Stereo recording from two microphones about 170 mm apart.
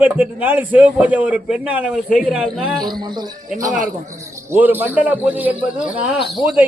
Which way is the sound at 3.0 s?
25° right (ahead or behind).